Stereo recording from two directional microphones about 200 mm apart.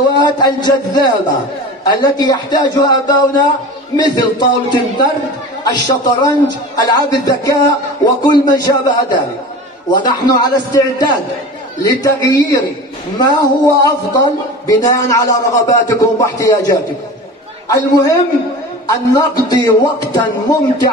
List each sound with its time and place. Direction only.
0.2 s a man's voice: 20° left (ahead or behind)